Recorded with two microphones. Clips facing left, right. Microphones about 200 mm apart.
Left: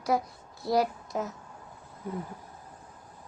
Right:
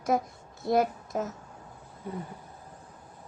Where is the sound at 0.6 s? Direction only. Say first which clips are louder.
Right 1 dB; 20° right (ahead or behind).